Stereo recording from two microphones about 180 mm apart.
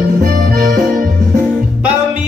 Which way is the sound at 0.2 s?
55° right (ahead or behind).